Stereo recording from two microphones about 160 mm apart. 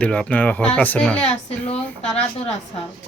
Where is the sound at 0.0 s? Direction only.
5° left (ahead or behind).